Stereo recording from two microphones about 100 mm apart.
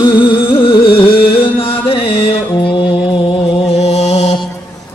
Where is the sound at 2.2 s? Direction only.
65° left (ahead or behind); by 4.2 s 90° left.